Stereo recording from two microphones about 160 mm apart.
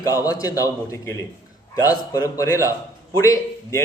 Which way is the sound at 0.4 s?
20° left (ahead or behind).